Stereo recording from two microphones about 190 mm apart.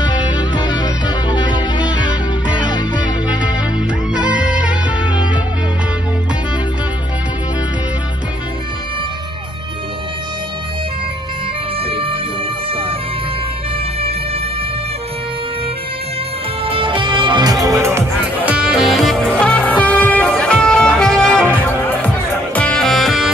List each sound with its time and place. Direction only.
0.1 s music: 20° left (ahead or behind)
4.1 s music: 5° right (ahead or behind)
11.8 s music: 30° right (ahead or behind)
16.6 s music: 25° right (ahead or behind); by 23.3 s centre (ahead or behind)